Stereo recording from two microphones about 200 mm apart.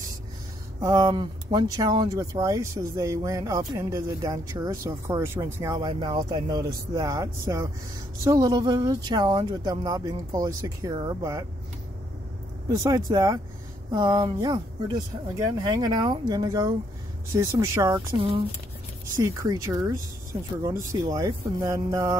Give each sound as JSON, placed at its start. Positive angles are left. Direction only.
{"t": 0.7, "sound": "speech", "side_deg": -15}
{"t": 12.7, "sound": "speech", "side_deg": -15}
{"t": 19.2, "sound": "speech", "side_deg": -15}